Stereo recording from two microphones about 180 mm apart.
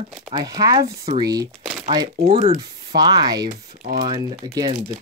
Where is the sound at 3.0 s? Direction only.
20° right (ahead or behind).